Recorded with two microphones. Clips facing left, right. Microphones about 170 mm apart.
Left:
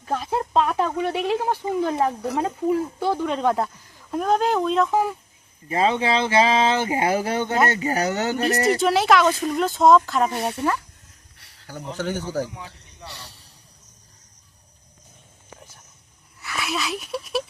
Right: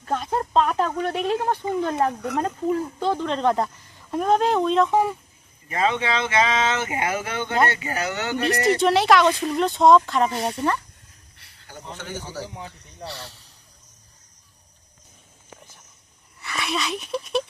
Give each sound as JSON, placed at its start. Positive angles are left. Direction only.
{"t": 0.0, "sound": "speech", "side_deg": 5}
{"t": 5.6, "sound": "speech", "side_deg": 30}
{"t": 8.8, "sound": "speech", "side_deg": 0}
{"t": 12.5, "sound": "speech", "side_deg": -35}
{"t": 16.4, "sound": "speech", "side_deg": 0}